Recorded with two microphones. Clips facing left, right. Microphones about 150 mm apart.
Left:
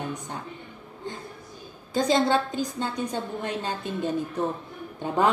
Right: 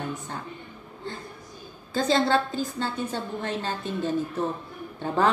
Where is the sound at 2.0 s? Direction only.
15° left (ahead or behind).